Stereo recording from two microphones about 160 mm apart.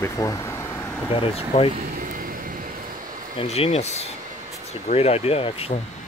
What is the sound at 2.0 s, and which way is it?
Vehicle, 60° right (ahead or behind).